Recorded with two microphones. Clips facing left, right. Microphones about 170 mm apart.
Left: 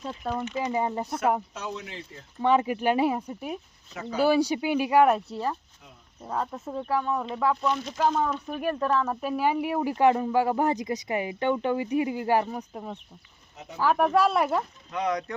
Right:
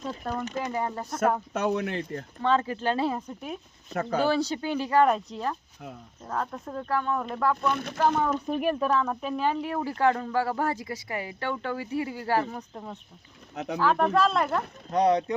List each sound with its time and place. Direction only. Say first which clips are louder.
0.2 s speech: left 2 dB; 5° left (ahead or behind)
0.6 s speech: left 3 dB; 15° left (ahead or behind)
1.5 s speech: right 9 dB; 60° right (ahead or behind)
2.4 s speech: left 3 dB; 15° left (ahead or behind)
3.8 s speech: right 7 dB; 55° right (ahead or behind)
4.2 s speech: left 5 dB; 10° left (ahead or behind)
7.7 s speech: left 1 dB; 55° right (ahead or behind)
8.4 s speech: right 3 dB; 15° right (ahead or behind)
8.7 s speech: even; centre (ahead or behind)
14.8 s speech: right 9 dB; 35° right (ahead or behind)